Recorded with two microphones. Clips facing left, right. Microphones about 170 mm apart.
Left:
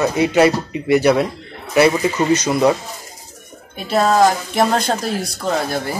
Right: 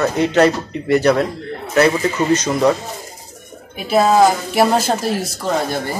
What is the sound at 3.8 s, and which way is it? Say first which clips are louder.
Speech: right 2 dB; 5° right (ahead or behind).